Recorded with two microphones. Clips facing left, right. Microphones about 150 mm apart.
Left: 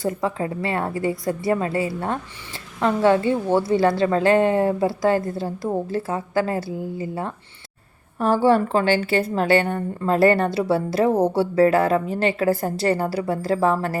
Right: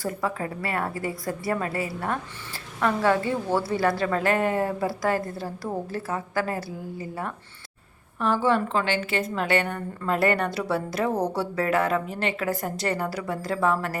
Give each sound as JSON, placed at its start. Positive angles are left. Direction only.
{"t": 0.0, "sound": "a woman's voice", "side_deg": 20}
{"t": 8.2, "sound": "a woman's voice", "side_deg": 35}